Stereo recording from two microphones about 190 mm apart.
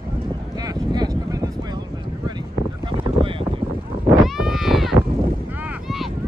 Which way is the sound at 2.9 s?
25° right (ahead or behind).